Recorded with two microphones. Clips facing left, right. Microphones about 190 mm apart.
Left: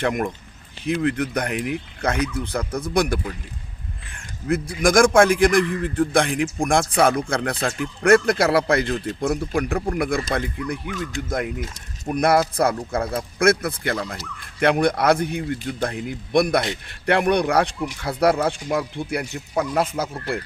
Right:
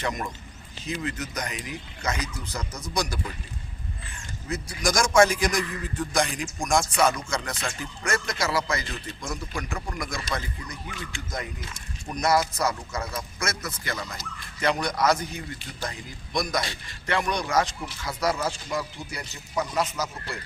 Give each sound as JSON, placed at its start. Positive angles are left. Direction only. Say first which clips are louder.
{"t": 0.0, "sound": "a man's voice", "louder": "left 8 dB", "side_deg": 55}
{"t": 4.4, "sound": "a man's voice", "louder": "left 8 dB", "side_deg": 55}
{"t": 10.9, "sound": "a man's voice", "louder": "left 7 dB", "side_deg": 50}